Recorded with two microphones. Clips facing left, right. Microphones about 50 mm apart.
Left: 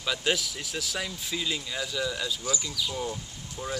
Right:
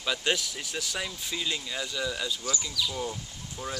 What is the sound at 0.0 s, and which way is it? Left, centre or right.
Speech, centre.